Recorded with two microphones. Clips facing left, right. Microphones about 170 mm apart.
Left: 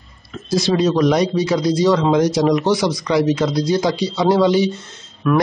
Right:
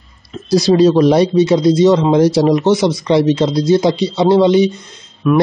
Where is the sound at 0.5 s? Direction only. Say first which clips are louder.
Right 6 dB; 35° right (ahead or behind).